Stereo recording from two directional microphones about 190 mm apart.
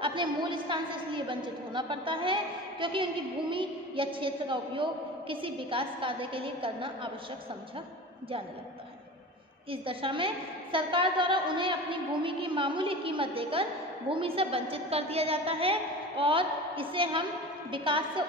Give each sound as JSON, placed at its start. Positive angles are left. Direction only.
{"t": 0.0, "sound": "a woman's voice", "side_deg": -25}
{"t": 9.7, "sound": "a woman's voice", "side_deg": -30}